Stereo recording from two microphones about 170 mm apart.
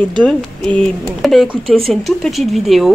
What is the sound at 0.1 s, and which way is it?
Speech, 5° left (ahead or behind).